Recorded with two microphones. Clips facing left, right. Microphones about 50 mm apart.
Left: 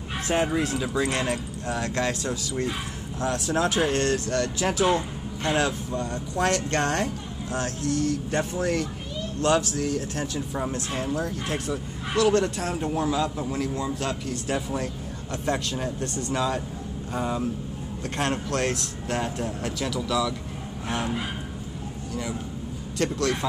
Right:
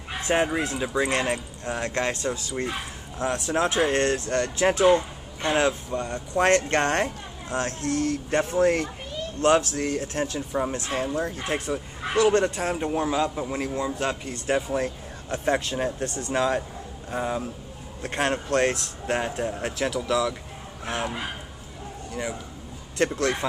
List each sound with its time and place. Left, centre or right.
0.3 s speech: right
17.1 s speech: centre
22.9 s speech: right